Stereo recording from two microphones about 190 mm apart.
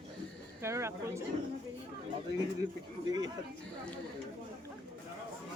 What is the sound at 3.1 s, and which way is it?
Speech, 20° right (ahead or behind).